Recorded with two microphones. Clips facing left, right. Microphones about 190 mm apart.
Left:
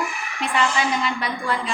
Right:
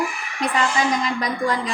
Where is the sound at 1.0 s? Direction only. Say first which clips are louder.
Right 3 dB; 40° right (ahead or behind).